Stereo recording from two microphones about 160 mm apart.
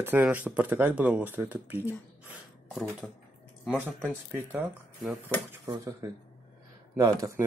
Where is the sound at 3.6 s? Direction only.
5° right (ahead or behind).